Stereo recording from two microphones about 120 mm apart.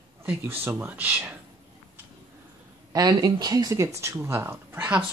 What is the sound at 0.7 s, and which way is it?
Speech, 20° right (ahead or behind).